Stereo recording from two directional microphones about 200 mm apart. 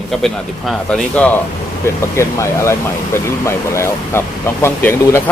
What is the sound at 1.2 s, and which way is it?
Speech, 5° left (ahead or behind).